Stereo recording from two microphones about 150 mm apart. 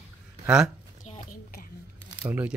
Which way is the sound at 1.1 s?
45° left (ahead or behind).